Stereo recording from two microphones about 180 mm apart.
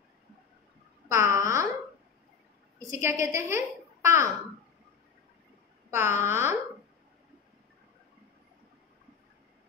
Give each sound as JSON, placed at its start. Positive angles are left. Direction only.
{"t": 1.0, "sound": "a sound", "side_deg": -15}
{"t": 2.9, "sound": "a child's voice", "side_deg": -15}
{"t": 5.9, "sound": "a child's voice", "side_deg": -15}